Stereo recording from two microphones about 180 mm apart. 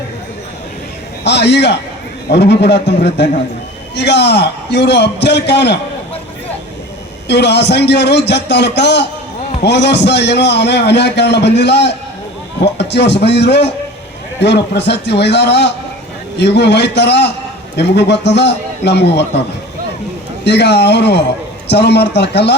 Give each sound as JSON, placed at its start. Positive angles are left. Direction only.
{"t": 1.2, "sound": "a man's voice", "side_deg": 70}
{"t": 7.3, "sound": "a man's voice", "side_deg": 70}
{"t": 20.4, "sound": "a man's voice", "side_deg": 70}